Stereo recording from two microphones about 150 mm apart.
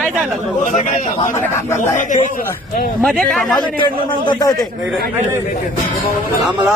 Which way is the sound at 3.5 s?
30° left (ahead or behind).